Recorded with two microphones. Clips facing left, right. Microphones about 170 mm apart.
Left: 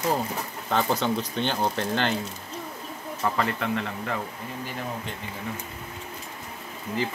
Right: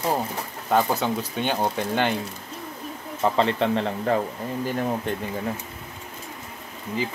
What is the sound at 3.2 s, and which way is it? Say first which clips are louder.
Speech: right 5 dB; 25° right (ahead or behind).